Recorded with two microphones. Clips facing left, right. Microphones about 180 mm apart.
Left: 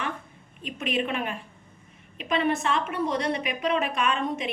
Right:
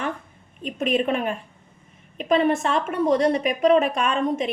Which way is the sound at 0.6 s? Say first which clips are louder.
Right 6 dB; 45° right (ahead or behind).